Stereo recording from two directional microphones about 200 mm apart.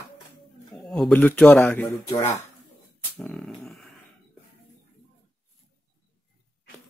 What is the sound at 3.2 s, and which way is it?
Speech, centre (ahead or behind).